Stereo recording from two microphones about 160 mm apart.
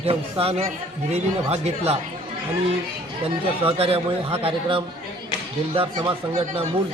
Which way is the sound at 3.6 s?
40° right (ahead or behind).